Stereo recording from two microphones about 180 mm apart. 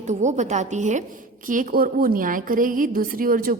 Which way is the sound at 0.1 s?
40° right (ahead or behind).